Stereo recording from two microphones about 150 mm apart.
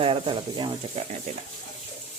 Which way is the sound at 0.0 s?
35° right (ahead or behind).